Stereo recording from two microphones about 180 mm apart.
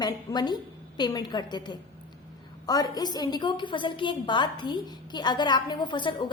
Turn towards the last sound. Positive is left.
turn(degrees=25)  # may be behind; listen again after turning